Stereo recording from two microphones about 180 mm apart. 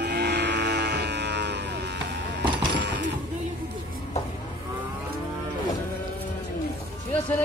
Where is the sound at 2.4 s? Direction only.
25° right (ahead or behind).